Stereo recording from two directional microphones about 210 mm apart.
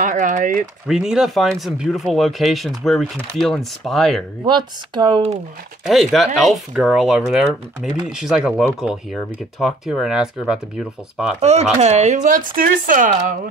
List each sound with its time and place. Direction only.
0.0 s speech: 35° right (ahead or behind)
0.8 s speech: 5° right (ahead or behind)
4.5 s speech: 20° right (ahead or behind)
5.9 s speech: centre (ahead or behind)
11.4 s speech: 30° right (ahead or behind)